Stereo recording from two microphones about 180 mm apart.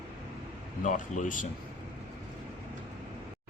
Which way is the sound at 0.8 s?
45° left (ahead or behind).